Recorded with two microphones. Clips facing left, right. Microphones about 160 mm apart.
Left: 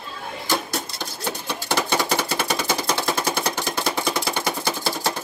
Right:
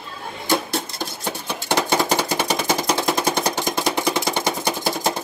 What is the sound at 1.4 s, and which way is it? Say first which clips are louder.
Music: right 3 dB; 15° right (ahead or behind).